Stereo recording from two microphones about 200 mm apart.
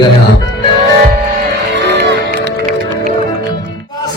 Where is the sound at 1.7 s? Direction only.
60° right (ahead or behind).